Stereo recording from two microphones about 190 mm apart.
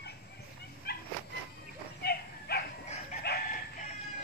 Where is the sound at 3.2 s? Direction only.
55° left (ahead or behind).